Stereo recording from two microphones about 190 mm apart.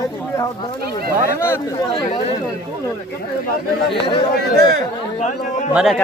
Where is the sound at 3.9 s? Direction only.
25° left (ahead or behind).